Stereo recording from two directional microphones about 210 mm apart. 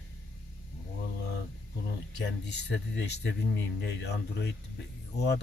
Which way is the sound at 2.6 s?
55° left (ahead or behind).